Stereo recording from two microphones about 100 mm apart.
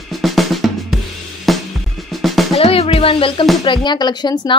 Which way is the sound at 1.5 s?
Centre (ahead or behind).